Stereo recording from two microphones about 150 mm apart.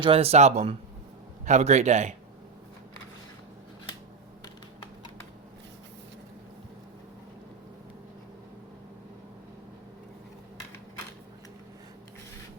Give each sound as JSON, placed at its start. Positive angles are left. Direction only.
{"t": 0.0, "sound": "speech", "side_deg": -40}